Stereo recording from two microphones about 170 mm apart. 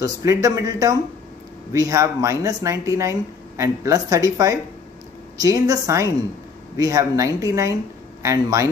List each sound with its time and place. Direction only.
0.0 s a man's voice: 20° right (ahead or behind)